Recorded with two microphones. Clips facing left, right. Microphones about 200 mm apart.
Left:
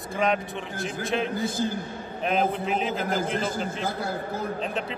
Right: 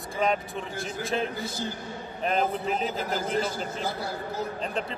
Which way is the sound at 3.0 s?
50° left (ahead or behind).